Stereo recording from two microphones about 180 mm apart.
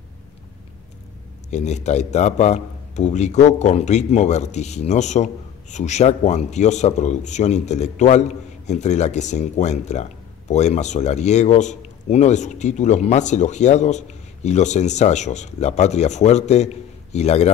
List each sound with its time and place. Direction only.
1.5 s a man's voice: 40° left (ahead or behind)